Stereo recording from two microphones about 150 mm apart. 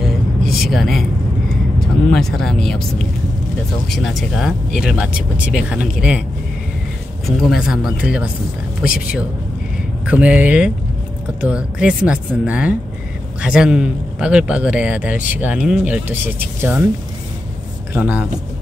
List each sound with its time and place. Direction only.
0.0 s a sound: centre (ahead or behind)
1.8 s speech: 5° left (ahead or behind)
3.9 s speech: centre (ahead or behind)
7.4 s speech: 5° right (ahead or behind)
10.0 s a man's voice: 10° right (ahead or behind)
17.9 s a man's voice: 10° right (ahead or behind)